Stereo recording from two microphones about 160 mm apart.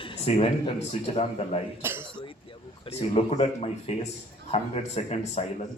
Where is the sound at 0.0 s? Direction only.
35° left (ahead or behind).